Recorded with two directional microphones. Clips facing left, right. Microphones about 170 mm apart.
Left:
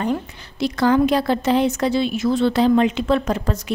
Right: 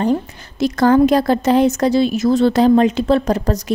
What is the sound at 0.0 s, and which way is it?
A woman's voice, 40° right (ahead or behind).